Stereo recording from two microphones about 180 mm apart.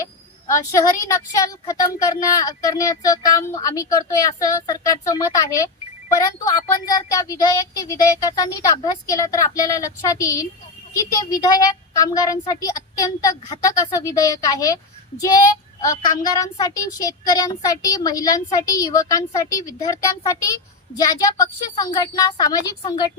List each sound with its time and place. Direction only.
0.0 s a woman's voice: 15° left (ahead or behind)